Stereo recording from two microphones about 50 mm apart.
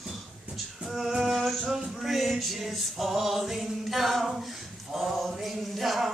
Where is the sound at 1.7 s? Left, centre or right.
Centre.